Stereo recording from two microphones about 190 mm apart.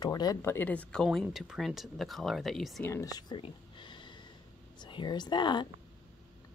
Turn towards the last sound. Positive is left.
turn(degrees=25)  # may be behind; listen again after turning